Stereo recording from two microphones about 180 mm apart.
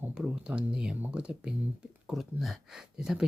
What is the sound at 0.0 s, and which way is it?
Speech, 5° right (ahead or behind).